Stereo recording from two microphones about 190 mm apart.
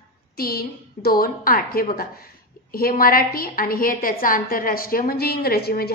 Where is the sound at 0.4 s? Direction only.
50° left (ahead or behind).